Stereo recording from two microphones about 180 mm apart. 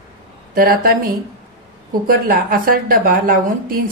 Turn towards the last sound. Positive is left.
turn(degrees=-50)  # may be behind; listen again after turning